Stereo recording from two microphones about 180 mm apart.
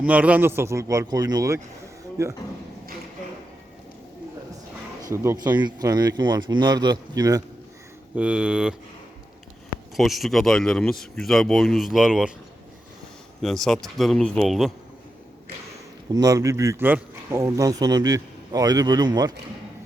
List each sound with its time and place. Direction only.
0.0 s speech: 10° right (ahead or behind)
5.1 s speech: 15° right (ahead or behind)
8.1 s speech: 5° right (ahead or behind)
9.9 s speech: centre (ahead or behind)
13.4 s speech: centre (ahead or behind)
16.1 s speech: 20° right (ahead or behind)